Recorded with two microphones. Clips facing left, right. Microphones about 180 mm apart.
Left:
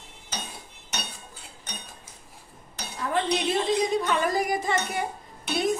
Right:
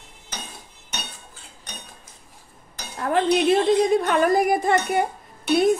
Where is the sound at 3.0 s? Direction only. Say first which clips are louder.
Right 6 dB; 60° right (ahead or behind).